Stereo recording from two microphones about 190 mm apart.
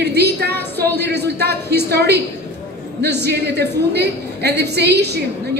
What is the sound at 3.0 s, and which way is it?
A woman's voice, 60° right (ahead or behind).